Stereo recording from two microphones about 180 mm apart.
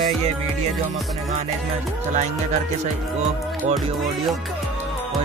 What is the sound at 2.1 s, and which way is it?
Music, 40° right (ahead or behind).